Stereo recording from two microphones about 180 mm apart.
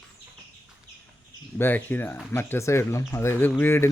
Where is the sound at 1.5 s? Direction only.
10° left (ahead or behind).